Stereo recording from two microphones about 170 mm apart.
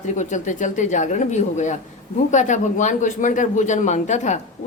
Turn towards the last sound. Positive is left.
turn(degrees=45)  # may be behind; listen again after turning